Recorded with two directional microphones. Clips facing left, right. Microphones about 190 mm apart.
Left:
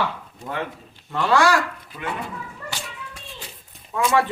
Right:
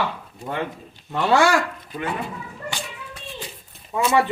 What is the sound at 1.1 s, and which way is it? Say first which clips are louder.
Speech: right 1 dB; 20° right (ahead or behind).